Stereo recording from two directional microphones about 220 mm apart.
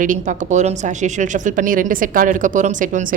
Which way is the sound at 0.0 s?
35° right (ahead or behind).